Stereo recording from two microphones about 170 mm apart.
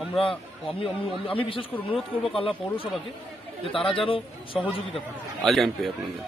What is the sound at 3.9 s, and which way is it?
Speech, 30° left (ahead or behind).